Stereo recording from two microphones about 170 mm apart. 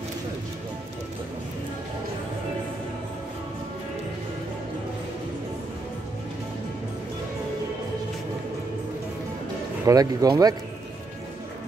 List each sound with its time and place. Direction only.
9.8 s speech: 20° right (ahead or behind)